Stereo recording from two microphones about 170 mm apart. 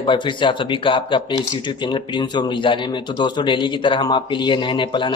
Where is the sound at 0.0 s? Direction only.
30° left (ahead or behind).